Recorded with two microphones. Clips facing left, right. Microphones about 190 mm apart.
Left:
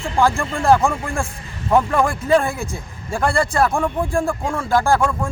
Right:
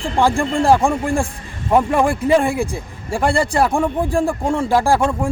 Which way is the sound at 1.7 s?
15° right (ahead or behind).